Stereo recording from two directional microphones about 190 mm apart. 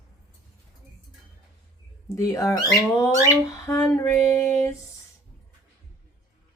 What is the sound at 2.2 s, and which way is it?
Female singing, 15° left (ahead or behind).